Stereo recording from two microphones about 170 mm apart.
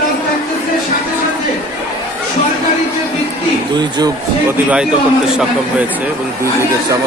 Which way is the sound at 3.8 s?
25° right (ahead or behind).